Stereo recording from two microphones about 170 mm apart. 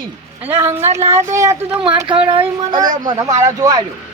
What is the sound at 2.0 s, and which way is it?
Speech, 30° right (ahead or behind).